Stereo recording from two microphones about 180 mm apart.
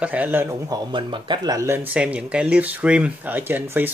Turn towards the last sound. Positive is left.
turn(degrees=-10)  # may be behind; listen again after turning